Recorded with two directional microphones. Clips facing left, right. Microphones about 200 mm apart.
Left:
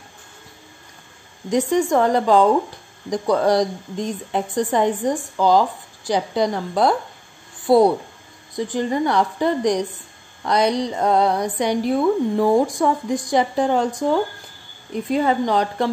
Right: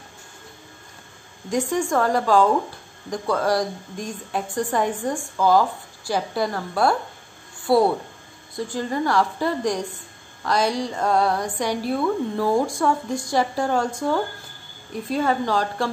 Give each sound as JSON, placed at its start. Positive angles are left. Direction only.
{"t": 1.5, "sound": "speech", "side_deg": 20}